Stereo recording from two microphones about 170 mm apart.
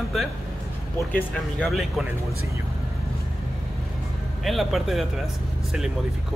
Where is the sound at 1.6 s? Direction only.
Centre (ahead or behind).